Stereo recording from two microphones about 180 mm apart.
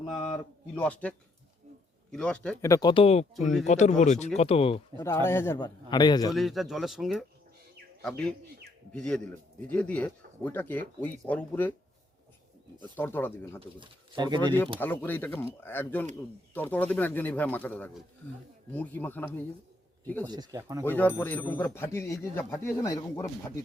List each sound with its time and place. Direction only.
0.2 s speech: 10° left (ahead or behind)
2.1 s speech: 5° left (ahead or behind)
2.6 s speech: 15° left (ahead or behind)
2.9 s speech: 35° left (ahead or behind)
5.0 s speech: 15° left (ahead or behind)
6.3 s speech: centre (ahead or behind)
8.9 s speech: 5° left (ahead or behind)
12.8 s speech: 10° left (ahead or behind)
13.6 s speech: 25° right (ahead or behind)
14.8 s speech: 10° left (ahead or behind)
20.2 s speech: 25° right (ahead or behind)
20.8 s speech: 10° left (ahead or behind)